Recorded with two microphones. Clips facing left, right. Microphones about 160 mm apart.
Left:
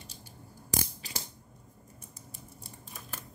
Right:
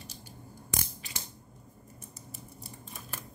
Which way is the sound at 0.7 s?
35° left (ahead or behind).